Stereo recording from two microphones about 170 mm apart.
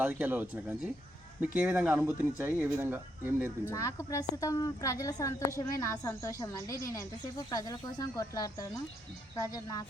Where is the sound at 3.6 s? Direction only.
20° left (ahead or behind).